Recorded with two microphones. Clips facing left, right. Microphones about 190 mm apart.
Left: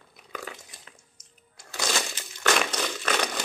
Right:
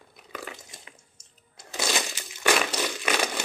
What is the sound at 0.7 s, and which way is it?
Crunch, 20° right (ahead or behind).